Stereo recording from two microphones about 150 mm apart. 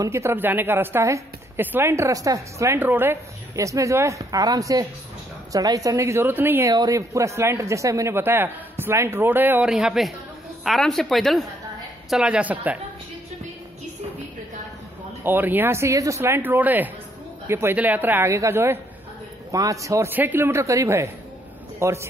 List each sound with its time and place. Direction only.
0.0 s a woman's voice: 20° right (ahead or behind)
6.7 s a woman's voice: 25° right (ahead or behind); by 12.7 s 10° right (ahead or behind)
15.2 s a woman's voice: 15° right (ahead or behind)